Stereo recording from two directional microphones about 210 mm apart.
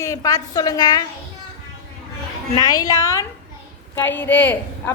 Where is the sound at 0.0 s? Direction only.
15° left (ahead or behind).